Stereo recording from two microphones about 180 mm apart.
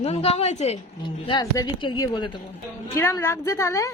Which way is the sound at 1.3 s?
25° left (ahead or behind).